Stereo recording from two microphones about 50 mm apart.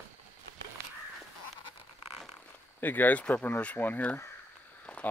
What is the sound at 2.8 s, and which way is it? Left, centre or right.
Speech, left.